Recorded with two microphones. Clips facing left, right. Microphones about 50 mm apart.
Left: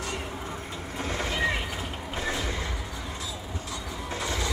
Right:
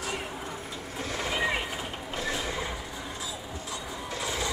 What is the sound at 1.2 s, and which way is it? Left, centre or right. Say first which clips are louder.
Vehicle: right 1 dB; centre.